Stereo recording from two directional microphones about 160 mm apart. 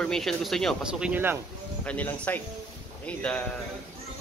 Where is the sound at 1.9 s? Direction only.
10° left (ahead or behind).